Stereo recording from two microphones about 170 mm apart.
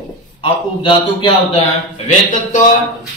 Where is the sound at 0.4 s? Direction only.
30° left (ahead or behind).